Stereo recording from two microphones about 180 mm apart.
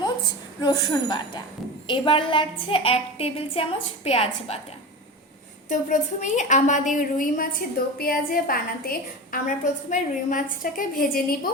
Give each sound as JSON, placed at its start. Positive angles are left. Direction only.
{"t": 0.6, "sound": "a woman's voice", "side_deg": 25}
{"t": 5.6, "sound": "a woman's voice", "side_deg": 45}